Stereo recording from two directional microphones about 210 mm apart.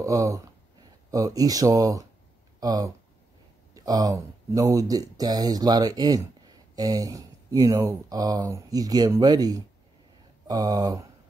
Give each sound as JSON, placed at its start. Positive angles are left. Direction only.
{"t": 0.0, "sound": "speech", "side_deg": -15}